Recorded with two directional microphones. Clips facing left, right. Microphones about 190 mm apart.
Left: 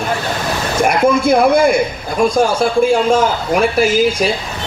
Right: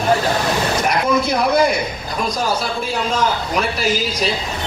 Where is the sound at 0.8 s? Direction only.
50° left (ahead or behind).